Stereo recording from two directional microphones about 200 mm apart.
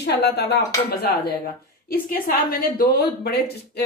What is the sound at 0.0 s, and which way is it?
Speech, 55° left (ahead or behind).